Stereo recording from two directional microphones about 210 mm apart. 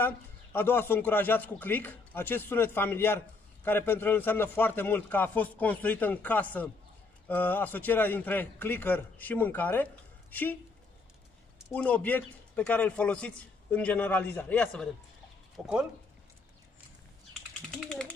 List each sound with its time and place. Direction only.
0.0 s speech: 10° left (ahead or behind)
11.7 s a man's voice: 5° left (ahead or behind)
17.6 s a sound: 5° left (ahead or behind)